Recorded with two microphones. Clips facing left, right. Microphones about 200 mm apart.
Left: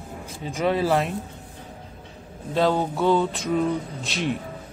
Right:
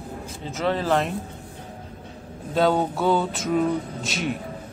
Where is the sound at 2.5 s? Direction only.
Centre (ahead or behind).